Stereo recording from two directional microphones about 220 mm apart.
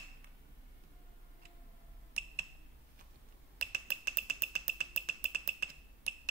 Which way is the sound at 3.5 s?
40° right (ahead or behind).